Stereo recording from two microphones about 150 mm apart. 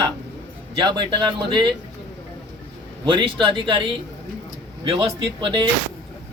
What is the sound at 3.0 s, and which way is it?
Speech, 35° right (ahead or behind).